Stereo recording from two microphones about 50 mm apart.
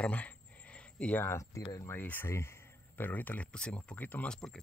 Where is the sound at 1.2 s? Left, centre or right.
Left.